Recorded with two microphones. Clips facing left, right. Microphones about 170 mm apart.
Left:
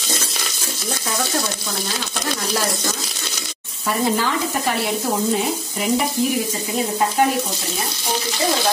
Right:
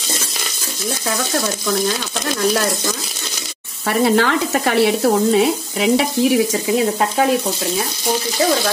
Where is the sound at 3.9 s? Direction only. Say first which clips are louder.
Right 5 dB; 70° right (ahead or behind).